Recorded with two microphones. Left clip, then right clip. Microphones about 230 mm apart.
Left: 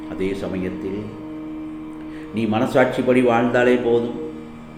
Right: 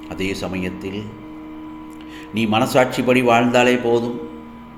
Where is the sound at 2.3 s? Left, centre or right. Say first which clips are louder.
Right 3 dB; right.